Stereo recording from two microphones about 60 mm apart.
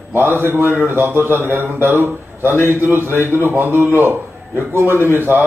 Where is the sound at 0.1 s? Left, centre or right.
Right.